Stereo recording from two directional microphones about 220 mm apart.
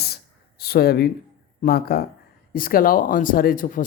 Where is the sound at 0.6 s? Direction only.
45° left (ahead or behind).